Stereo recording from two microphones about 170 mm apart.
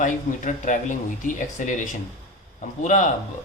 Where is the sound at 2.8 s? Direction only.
45° left (ahead or behind).